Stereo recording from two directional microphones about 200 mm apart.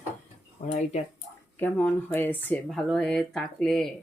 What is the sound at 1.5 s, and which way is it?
Speech, 10° left (ahead or behind).